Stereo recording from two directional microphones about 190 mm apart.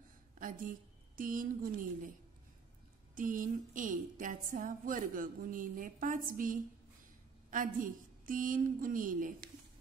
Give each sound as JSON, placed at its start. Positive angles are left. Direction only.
{"t": 0.4, "sound": "a woman's voice", "side_deg": -45}
{"t": 3.2, "sound": "a woman's voice", "side_deg": -45}